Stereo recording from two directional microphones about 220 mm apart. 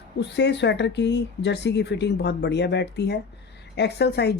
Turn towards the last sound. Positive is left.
turn(degrees=50)  # may be behind; listen again after turning